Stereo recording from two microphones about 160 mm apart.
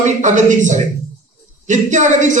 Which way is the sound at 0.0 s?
50° right (ahead or behind).